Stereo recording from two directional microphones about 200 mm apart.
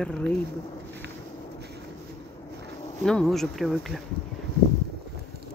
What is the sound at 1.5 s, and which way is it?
Vehicle, 55° right (ahead or behind).